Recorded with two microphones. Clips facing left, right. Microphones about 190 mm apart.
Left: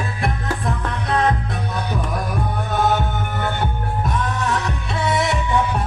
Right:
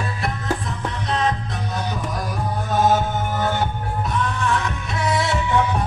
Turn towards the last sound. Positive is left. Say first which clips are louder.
# left 1 dB
turn(degrees=20)  # may be behind; listen again after turning